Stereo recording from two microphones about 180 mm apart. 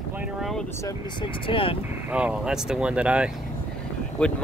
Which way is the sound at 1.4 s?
30° left (ahead or behind).